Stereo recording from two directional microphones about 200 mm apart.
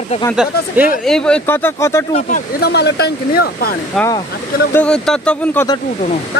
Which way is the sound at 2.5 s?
55° left (ahead or behind).